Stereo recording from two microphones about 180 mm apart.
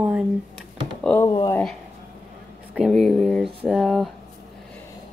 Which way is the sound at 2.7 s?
Centre (ahead or behind).